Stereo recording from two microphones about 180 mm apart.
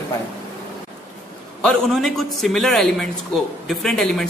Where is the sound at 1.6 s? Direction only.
5° left (ahead or behind).